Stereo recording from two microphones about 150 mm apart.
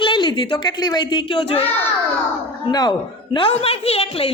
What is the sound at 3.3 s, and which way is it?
Speech, 40° left (ahead or behind).